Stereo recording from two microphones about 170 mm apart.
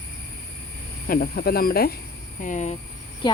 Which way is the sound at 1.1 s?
60° left (ahead or behind).